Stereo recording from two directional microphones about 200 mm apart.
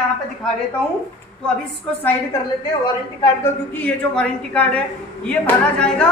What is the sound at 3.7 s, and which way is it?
A woman's voice, 5° left (ahead or behind).